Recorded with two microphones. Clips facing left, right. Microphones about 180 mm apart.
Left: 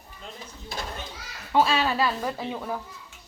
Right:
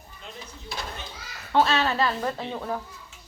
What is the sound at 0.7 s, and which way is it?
Children playing, 50° left (ahead or behind).